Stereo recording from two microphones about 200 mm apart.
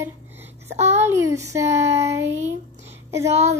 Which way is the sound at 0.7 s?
35° right (ahead or behind).